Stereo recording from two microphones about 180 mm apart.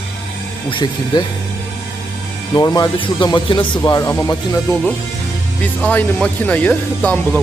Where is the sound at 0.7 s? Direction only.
25° left (ahead or behind).